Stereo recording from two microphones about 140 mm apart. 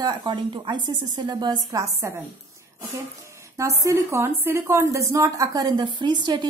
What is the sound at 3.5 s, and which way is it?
A woman's voice, 20° right (ahead or behind).